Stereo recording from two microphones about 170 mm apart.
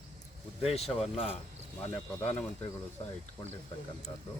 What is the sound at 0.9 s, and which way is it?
Speech, centre (ahead or behind).